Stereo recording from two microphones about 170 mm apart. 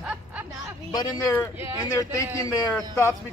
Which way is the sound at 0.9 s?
20° left (ahead or behind).